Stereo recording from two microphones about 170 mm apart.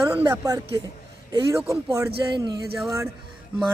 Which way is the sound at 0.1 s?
10° right (ahead or behind).